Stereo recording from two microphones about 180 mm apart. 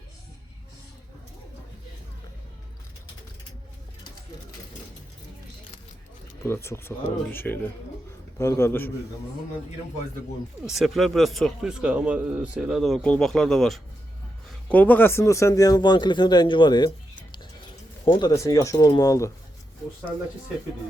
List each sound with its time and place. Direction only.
6.4 s speech: 15° left (ahead or behind)
10.7 s speech: centre (ahead or behind); by 16.9 s 25° left (ahead or behind)
18.1 s speech: 20° left (ahead or behind)